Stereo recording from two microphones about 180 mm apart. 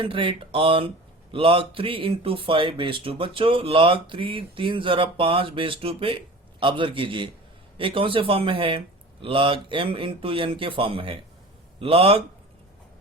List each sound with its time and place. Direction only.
0.0 s a man's voice: 30° right (ahead or behind)